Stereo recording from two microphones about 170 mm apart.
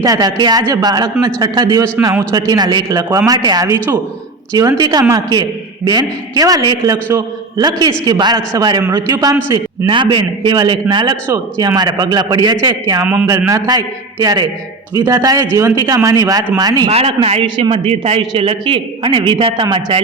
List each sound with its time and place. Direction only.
0.0 s a man's voice: 20° right (ahead or behind)
16.9 s a man's voice: 35° right (ahead or behind)